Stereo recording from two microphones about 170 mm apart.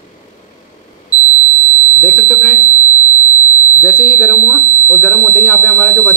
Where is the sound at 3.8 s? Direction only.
10° left (ahead or behind).